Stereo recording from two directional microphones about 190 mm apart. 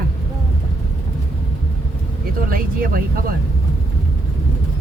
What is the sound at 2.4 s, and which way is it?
Speech, 50° right (ahead or behind).